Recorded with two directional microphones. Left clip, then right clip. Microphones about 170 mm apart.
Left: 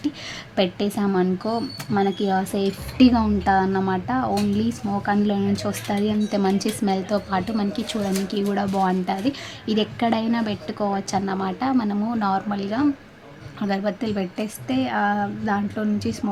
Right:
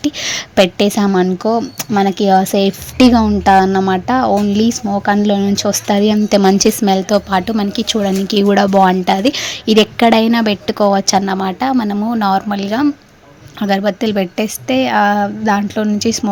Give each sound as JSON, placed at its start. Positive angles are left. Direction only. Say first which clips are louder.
{"t": 0.0, "sound": "speech", "louder": "right 11 dB", "side_deg": -45}